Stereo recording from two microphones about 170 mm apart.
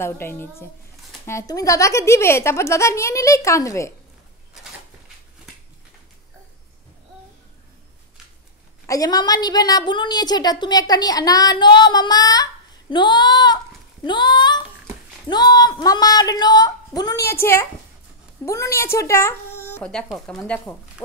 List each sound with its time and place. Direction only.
0.0 s speech: 15° left (ahead or behind)
8.8 s a woman's voice: 20° left (ahead or behind)